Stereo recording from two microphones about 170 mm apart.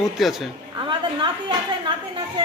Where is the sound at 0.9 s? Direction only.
30° right (ahead or behind).